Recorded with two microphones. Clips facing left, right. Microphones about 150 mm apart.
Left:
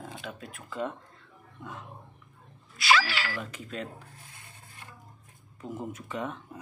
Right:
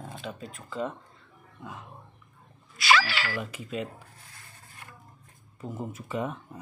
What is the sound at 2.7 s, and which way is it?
Speech, 75° right (ahead or behind).